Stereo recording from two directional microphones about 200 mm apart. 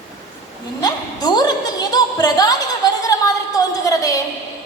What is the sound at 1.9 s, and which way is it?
Music, 20° left (ahead or behind).